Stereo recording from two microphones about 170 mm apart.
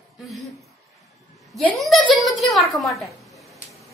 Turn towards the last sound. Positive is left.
turn(degrees=0)  # may be behind; listen again after turning